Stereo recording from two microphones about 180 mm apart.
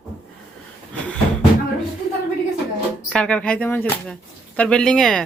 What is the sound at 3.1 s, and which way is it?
Speech, 5° left (ahead or behind).